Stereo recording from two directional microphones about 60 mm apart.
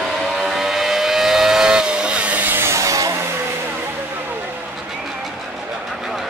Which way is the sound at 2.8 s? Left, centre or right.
Right.